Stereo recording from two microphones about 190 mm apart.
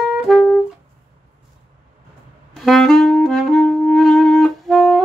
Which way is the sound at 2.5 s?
Centre (ahead or behind).